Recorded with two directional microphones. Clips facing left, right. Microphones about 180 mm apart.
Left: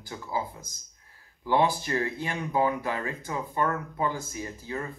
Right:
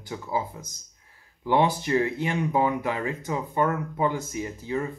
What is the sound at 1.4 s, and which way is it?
Speech, 20° right (ahead or behind).